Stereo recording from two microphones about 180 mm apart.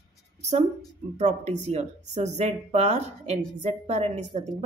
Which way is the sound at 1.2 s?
40° right (ahead or behind).